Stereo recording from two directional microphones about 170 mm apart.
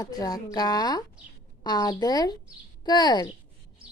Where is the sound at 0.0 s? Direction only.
20° left (ahead or behind).